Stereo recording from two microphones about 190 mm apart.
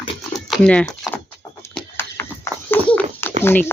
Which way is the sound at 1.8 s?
10° left (ahead or behind).